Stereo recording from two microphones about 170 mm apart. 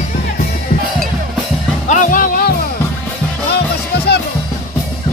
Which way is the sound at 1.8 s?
50° left (ahead or behind).